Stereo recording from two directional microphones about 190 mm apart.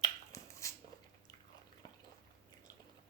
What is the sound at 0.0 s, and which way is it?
Dog, 15° left (ahead or behind).